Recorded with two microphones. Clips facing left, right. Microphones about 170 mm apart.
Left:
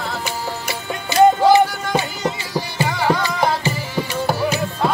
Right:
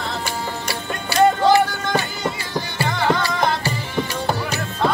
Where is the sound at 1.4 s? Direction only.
15° left (ahead or behind).